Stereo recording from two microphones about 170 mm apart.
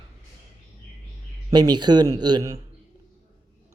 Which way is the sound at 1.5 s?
25° right (ahead or behind).